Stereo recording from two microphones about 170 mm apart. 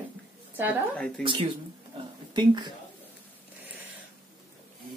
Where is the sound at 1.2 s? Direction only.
30° right (ahead or behind).